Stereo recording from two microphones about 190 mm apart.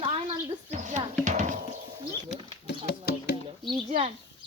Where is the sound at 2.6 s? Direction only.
60° left (ahead or behind).